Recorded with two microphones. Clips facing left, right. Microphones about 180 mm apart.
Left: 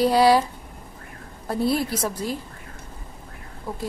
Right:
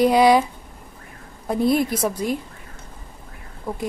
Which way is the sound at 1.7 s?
15° right (ahead or behind).